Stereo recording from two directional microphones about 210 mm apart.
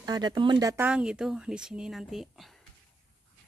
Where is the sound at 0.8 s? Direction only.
5° right (ahead or behind).